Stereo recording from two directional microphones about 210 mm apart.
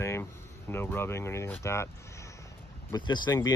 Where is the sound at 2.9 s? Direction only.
20° left (ahead or behind).